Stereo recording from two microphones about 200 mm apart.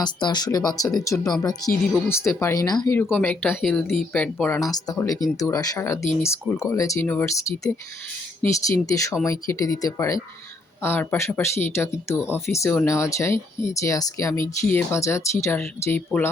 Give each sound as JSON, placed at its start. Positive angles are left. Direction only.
{"t": 0.0, "sound": "speech", "side_deg": 20}
{"t": 3.0, "sound": "speech", "side_deg": 10}
{"t": 8.9, "sound": "speech", "side_deg": 15}